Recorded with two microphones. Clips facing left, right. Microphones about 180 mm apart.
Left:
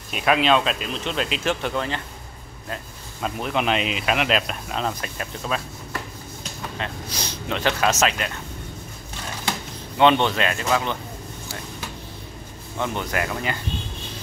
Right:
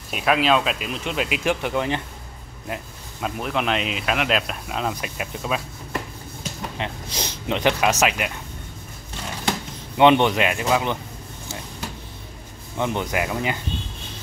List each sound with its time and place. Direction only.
0.1 s speech: centre (ahead or behind)
3.2 s speech: 5° right (ahead or behind)
6.8 s speech: 20° right (ahead or behind)
9.9 s speech: 15° right (ahead or behind)
12.7 s speech: 15° right (ahead or behind)